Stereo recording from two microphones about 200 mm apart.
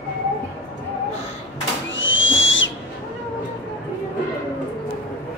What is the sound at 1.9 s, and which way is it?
Whistle, 70° left (ahead or behind).